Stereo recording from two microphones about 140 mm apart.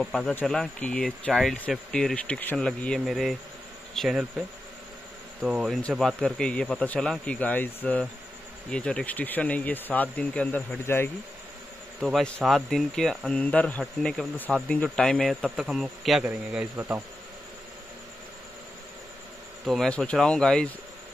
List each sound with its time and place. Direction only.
0.0 s speech: 5° left (ahead or behind)
12.0 s speech: centre (ahead or behind)
16.7 s speech: 15° right (ahead or behind)
19.6 s speech: centre (ahead or behind)